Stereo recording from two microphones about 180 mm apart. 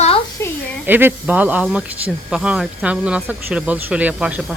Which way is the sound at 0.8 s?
10° right (ahead or behind).